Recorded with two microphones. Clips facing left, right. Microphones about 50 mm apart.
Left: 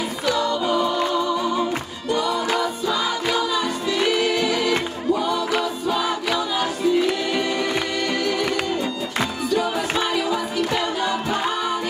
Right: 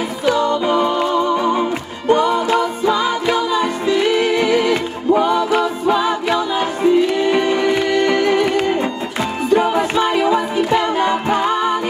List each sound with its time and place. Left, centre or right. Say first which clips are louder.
0.2 s music: right 6 dB; right